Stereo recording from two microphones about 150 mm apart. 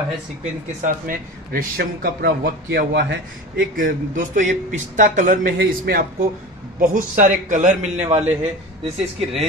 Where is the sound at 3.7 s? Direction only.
60° right (ahead or behind).